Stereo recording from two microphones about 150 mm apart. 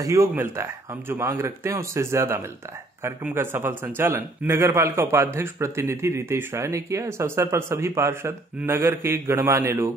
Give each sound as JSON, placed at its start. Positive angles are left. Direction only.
{"t": 0.0, "sound": "a man's voice", "side_deg": -20}